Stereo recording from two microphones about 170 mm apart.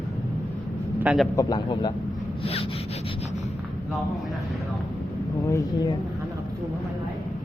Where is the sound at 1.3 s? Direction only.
20° left (ahead or behind).